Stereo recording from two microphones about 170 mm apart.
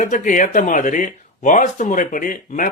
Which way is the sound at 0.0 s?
50° left (ahead or behind).